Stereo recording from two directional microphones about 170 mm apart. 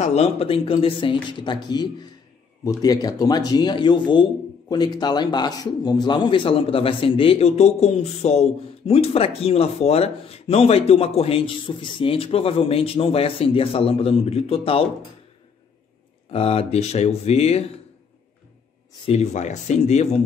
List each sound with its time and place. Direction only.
0.0 s a man's voice: 40° left (ahead or behind)
16.3 s a man's voice: 35° left (ahead or behind)
19.0 s a man's voice: 40° left (ahead or behind)